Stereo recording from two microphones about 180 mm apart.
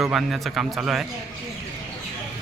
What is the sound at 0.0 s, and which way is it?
Speech, centre (ahead or behind).